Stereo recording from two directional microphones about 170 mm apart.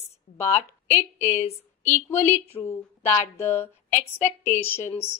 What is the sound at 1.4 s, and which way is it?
Speech, 45° left (ahead or behind).